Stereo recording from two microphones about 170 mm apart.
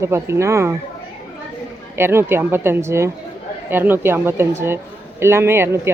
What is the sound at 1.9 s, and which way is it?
A woman's voice, 15° right (ahead or behind).